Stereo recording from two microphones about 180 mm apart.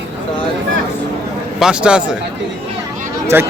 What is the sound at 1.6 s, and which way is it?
Speech, 5° right (ahead or behind).